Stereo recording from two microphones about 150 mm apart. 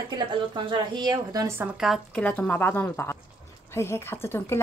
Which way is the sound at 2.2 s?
10° left (ahead or behind).